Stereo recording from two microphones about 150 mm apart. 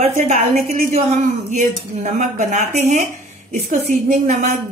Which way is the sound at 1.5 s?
55° right (ahead or behind).